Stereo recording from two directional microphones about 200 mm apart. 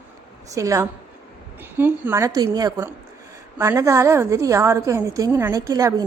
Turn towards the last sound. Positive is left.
turn(degrees=-15)  # may be behind; listen again after turning